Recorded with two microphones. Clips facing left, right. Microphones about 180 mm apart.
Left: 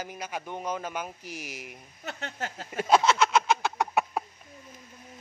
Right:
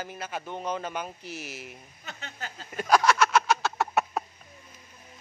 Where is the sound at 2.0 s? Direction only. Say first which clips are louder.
Left 6 dB; 70° left (ahead or behind).